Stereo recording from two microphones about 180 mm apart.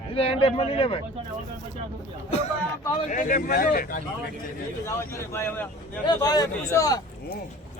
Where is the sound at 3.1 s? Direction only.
45° left (ahead or behind).